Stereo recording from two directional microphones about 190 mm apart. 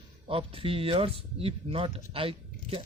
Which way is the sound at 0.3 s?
30° right (ahead or behind).